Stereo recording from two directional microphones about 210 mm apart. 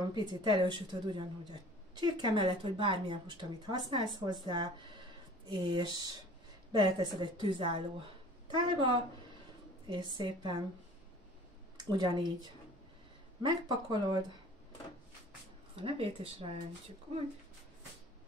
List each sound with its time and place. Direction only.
0.0 s a woman's voice: 20° right (ahead or behind)
11.7 s speech: 20° right (ahead or behind)
13.4 s a woman's voice: 20° right (ahead or behind)
15.7 s a woman's voice: 25° right (ahead or behind)